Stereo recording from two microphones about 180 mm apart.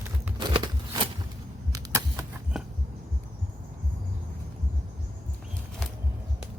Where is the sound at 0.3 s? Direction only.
25° right (ahead or behind).